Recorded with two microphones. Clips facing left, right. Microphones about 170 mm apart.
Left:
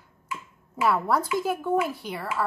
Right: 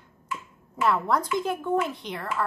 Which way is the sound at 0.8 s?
5° left (ahead or behind).